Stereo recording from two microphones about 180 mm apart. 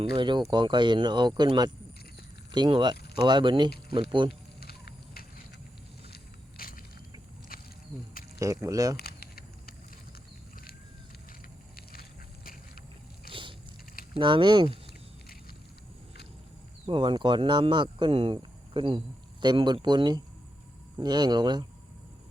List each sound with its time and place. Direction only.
0.0 s speech: 25° right (ahead or behind)
4.3 s a sound: 60° left (ahead or behind)
6.6 s vehicle: 55° left (ahead or behind)
7.5 s insect: 55° left (ahead or behind)
8.4 s speech: 20° right (ahead or behind)
9.0 s a sound: 60° left (ahead or behind)
14.2 s speech: 25° right (ahead or behind)
16.8 s speech: 25° right (ahead or behind)